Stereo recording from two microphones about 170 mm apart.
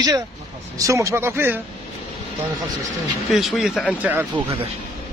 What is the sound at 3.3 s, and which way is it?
Speech, centre (ahead or behind).